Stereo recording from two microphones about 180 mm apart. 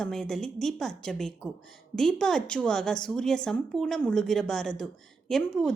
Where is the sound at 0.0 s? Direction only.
Centre (ahead or behind).